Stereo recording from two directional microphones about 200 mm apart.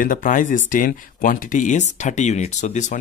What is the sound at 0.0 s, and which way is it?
Speech, 40° left (ahead or behind).